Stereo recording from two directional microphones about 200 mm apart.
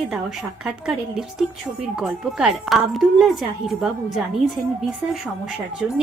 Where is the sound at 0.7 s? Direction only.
Centre (ahead or behind).